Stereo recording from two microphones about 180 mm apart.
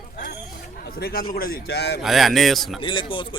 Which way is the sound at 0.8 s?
55° left (ahead or behind).